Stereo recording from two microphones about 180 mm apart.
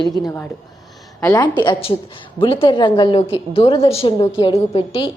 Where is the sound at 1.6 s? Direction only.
30° left (ahead or behind).